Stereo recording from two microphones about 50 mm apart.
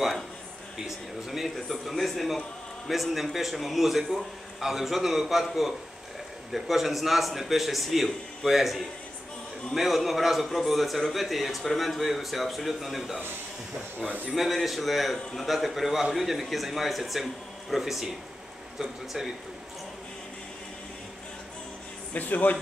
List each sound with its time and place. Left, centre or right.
0.8 s a man's voice: centre
13.9 s a man's voice: right
14.3 s a man's voice: centre
22.1 s speech: left